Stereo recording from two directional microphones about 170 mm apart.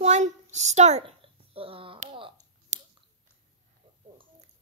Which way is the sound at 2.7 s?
45° right (ahead or behind).